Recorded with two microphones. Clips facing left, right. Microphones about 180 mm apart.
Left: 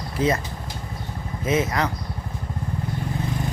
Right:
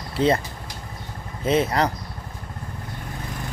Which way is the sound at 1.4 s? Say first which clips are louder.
Right 2 dB; 30° right (ahead or behind).